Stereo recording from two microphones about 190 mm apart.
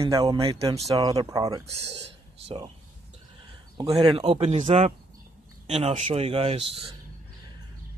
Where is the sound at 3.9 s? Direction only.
30° right (ahead or behind).